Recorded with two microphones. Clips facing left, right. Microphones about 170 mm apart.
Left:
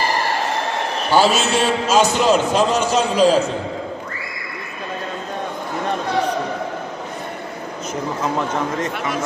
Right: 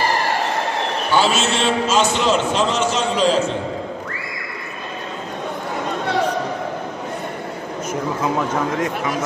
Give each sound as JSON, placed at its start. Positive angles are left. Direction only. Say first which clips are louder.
{"t": 1.1, "sound": "a man's voice", "louder": "left 3 dB", "side_deg": 40}
{"t": 7.9, "sound": "speech", "louder": "right 1 dB", "side_deg": -10}